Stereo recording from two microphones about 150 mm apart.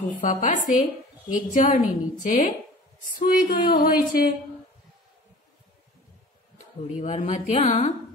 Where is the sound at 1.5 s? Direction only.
55° left (ahead or behind).